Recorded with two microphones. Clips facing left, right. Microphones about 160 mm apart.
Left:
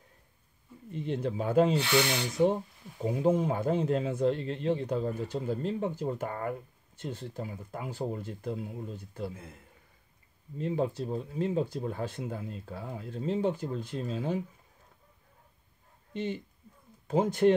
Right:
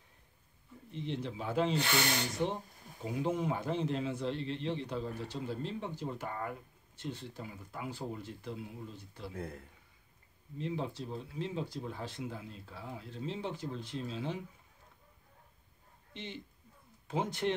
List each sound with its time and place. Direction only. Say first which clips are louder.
0.9 s speech: left 7 dB; 50° left (ahead or behind)
10.6 s speech: left 7 dB; 45° left (ahead or behind)
16.1 s speech: left 11 dB; 45° left (ahead or behind)